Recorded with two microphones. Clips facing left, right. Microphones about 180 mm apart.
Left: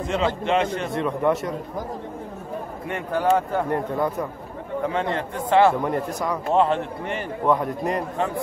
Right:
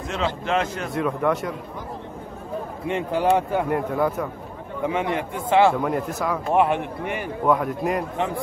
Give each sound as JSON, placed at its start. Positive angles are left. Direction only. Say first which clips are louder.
{"t": 0.1, "sound": "a man's voice", "louder": "left 2 dB", "side_deg": 0}
{"t": 2.9, "sound": "a man's voice", "louder": "right 1 dB", "side_deg": -20}
{"t": 3.7, "sound": "a man's voice", "louder": "right 1 dB", "side_deg": -5}
{"t": 4.8, "sound": "a man's voice", "louder": "right 2 dB", "side_deg": -15}
{"t": 5.8, "sound": "a man's voice", "louder": "even", "side_deg": 0}
{"t": 6.5, "sound": "a man's voice", "louder": "even", "side_deg": -15}